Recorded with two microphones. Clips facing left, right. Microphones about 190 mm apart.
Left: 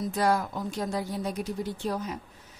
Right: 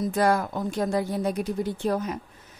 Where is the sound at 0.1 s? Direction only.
55° right (ahead or behind).